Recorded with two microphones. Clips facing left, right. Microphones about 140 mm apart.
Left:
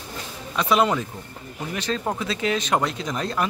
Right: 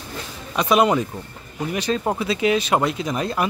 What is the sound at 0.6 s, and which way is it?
Speech, 15° right (ahead or behind).